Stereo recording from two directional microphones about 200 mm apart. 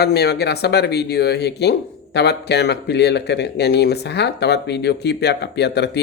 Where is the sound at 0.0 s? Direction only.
55° left (ahead or behind).